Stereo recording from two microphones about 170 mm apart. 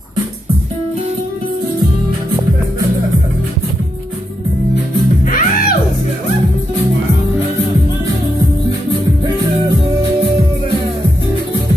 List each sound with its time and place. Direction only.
5.2 s music: 55° left (ahead or behind)